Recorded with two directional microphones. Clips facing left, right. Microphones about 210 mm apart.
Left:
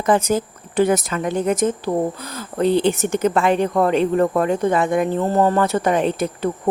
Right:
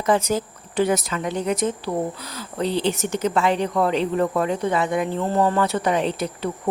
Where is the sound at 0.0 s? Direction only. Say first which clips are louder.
Left 3 dB; 50° left (ahead or behind).